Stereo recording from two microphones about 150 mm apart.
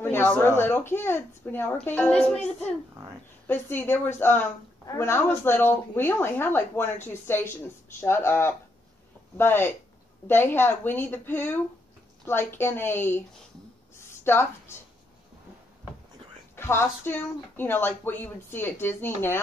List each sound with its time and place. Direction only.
0.0 s a woman's voice: 15° left (ahead or behind)
3.4 s a woman's voice: 15° left (ahead or behind)
13.9 s a sound: 15° left (ahead or behind)
16.5 s a woman's voice: 15° left (ahead or behind)